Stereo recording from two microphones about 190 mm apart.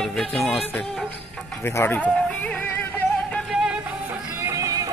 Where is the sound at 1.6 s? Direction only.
10° left (ahead or behind).